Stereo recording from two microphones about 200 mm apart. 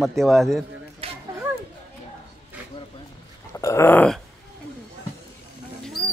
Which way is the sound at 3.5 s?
15° left (ahead or behind).